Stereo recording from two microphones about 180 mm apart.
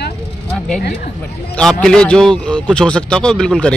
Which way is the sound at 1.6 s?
5° left (ahead or behind).